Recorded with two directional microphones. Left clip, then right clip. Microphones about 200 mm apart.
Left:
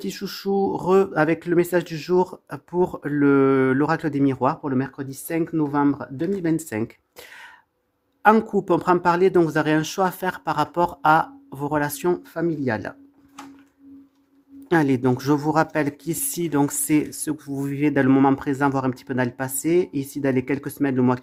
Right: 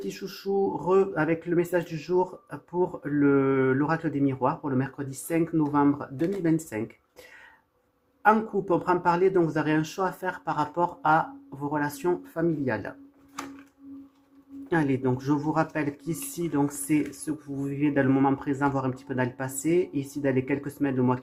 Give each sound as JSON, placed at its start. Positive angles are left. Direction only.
{"t": 0.0, "sound": "speech", "side_deg": 50}
{"t": 14.7, "sound": "speech", "side_deg": 55}